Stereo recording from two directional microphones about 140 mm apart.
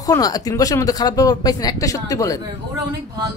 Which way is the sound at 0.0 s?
25° left (ahead or behind).